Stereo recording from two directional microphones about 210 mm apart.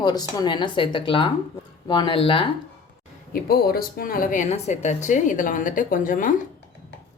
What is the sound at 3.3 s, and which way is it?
A woman's voice, 45° left (ahead or behind).